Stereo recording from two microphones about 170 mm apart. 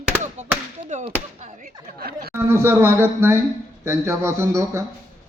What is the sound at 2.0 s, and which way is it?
Speech, 65° right (ahead or behind).